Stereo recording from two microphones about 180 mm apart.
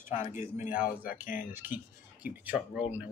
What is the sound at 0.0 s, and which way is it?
Speech, 45° left (ahead or behind).